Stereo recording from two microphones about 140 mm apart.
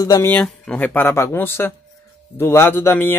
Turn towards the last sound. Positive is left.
turn(degrees=15)  # may be behind; listen again after turning